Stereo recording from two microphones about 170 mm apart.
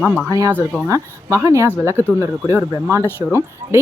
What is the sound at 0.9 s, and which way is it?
Speech, 20° right (ahead or behind).